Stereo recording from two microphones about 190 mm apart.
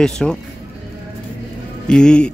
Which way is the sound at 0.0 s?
5° left (ahead or behind).